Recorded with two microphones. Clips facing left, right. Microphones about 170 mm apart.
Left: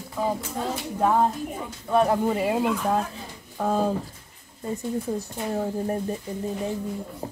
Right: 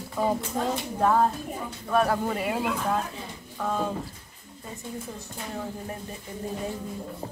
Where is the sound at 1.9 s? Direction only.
20° left (ahead or behind).